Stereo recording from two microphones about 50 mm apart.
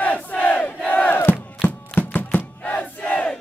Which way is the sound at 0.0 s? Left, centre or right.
Left.